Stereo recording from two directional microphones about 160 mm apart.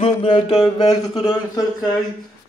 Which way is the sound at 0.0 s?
30° left (ahead or behind).